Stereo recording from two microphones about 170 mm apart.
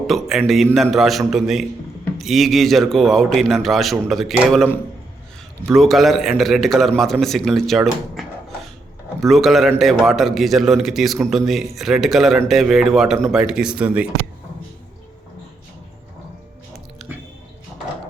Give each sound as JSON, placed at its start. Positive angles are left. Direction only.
{"t": 0.1, "sound": "a man's voice", "side_deg": 0}
{"t": 17.0, "sound": "chewing", "side_deg": 0}